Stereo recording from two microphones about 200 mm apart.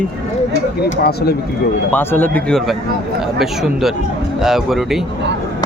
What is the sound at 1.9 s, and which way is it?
Speech, 10° left (ahead or behind).